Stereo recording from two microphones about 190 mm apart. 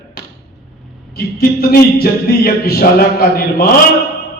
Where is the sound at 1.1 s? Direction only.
55° left (ahead or behind).